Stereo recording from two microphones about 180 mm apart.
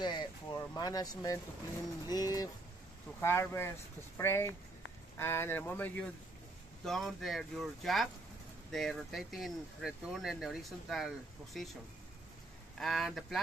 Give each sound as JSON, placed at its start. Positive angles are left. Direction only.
{"t": 0.0, "sound": "speech", "side_deg": 25}
{"t": 12.7, "sound": "speech", "side_deg": 0}